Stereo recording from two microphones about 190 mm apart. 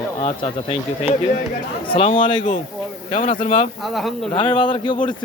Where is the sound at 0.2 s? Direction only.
30° left (ahead or behind).